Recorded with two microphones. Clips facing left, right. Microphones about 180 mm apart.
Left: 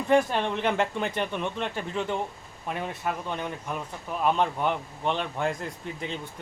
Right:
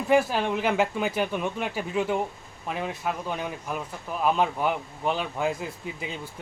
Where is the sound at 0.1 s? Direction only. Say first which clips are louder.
Right 1 dB; 5° right (ahead or behind).